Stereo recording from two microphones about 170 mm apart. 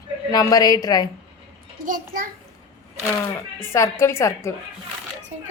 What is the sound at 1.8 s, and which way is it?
Speech, 55° right (ahead or behind).